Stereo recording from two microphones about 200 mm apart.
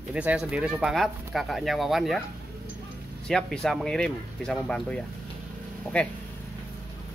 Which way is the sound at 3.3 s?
Centre (ahead or behind).